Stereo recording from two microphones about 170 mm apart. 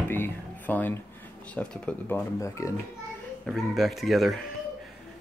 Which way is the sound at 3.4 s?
Centre (ahead or behind).